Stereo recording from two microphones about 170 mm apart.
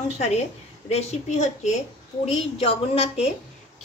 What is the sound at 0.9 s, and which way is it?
Dishes, 40° left (ahead or behind).